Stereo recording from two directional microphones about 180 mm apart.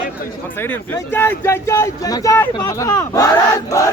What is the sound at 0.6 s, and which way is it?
Speech, 10° left (ahead or behind).